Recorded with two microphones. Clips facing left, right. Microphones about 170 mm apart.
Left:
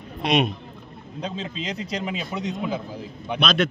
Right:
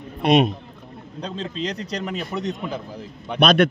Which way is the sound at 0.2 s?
50° right (ahead or behind).